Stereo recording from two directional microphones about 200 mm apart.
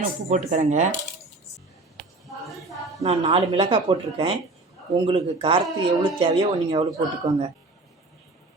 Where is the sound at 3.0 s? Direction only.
30° right (ahead or behind).